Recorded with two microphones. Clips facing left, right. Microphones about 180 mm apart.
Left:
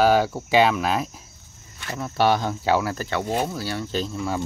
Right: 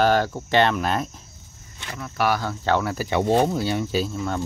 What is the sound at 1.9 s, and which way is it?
Speech, 30° left (ahead or behind).